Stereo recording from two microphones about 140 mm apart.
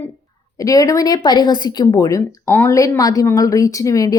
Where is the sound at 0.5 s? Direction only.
25° left (ahead or behind).